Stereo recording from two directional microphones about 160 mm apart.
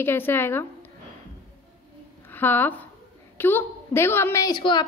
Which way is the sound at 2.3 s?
15° left (ahead or behind).